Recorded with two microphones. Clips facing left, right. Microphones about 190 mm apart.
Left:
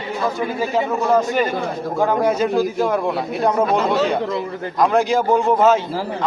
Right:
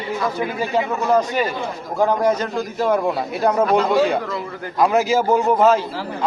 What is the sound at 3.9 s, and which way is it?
A man's voice, 10° right (ahead or behind).